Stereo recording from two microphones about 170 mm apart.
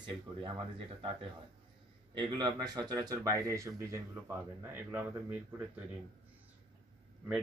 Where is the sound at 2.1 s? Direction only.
25° right (ahead or behind).